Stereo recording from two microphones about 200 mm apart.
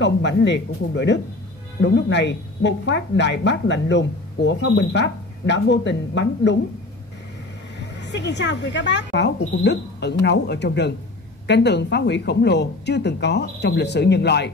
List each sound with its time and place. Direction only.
0.0 s a woman's voice: 60° left (ahead or behind)
7.8 s a woman's voice: 60° left (ahead or behind)